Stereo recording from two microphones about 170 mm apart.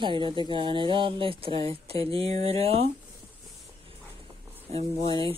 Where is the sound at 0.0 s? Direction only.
30° right (ahead or behind).